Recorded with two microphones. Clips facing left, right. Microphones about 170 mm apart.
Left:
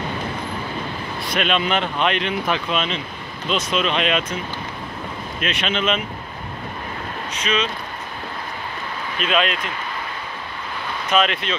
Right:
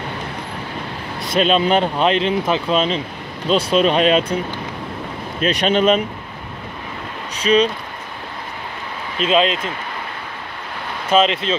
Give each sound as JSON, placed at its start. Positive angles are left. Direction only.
{"t": 1.3, "sound": "speech", "side_deg": -35}
{"t": 5.4, "sound": "speech", "side_deg": -40}
{"t": 7.3, "sound": "speech", "side_deg": -35}
{"t": 9.2, "sound": "speech", "side_deg": -25}
{"t": 11.1, "sound": "speech", "side_deg": -30}